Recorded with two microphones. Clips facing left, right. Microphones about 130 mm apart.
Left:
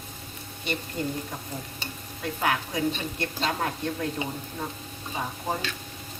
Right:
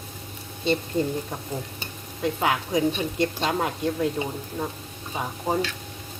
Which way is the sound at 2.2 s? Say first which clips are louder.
Right 3 dB; 20° right (ahead or behind).